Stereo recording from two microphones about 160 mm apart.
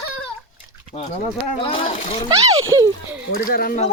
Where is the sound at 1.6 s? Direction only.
35° left (ahead or behind).